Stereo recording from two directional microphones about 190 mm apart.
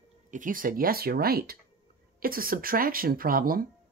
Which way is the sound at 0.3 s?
45° right (ahead or behind).